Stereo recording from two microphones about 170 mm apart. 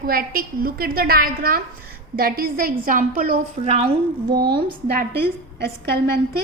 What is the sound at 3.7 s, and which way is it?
A woman's voice, 35° right (ahead or behind).